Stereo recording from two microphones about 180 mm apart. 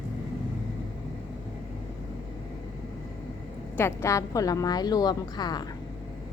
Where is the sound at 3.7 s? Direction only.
15° left (ahead or behind).